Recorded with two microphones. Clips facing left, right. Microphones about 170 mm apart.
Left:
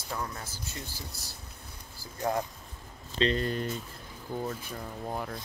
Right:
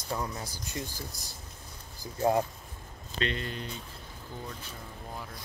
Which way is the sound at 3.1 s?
35° left (ahead or behind).